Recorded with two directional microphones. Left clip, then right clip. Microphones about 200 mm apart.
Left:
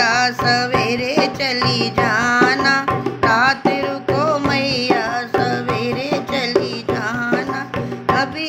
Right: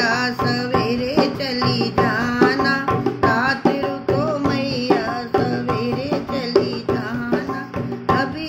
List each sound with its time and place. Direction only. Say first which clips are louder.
0.0 s music: left 4 dB; 5° right (ahead or behind)
6.5 s music: right 2 dB; 25° left (ahead or behind)